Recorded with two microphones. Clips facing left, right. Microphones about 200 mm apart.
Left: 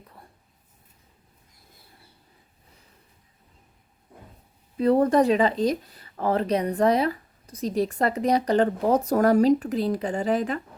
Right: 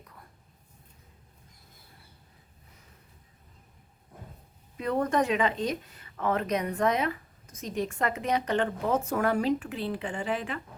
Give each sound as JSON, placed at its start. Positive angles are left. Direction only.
{"t": 4.8, "sound": "speech", "side_deg": 35}